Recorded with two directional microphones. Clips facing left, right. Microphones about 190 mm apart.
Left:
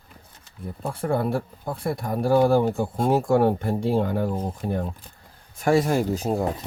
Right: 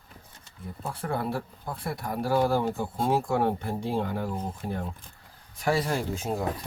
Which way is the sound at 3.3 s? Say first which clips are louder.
Left 6 dB; 50° left (ahead or behind).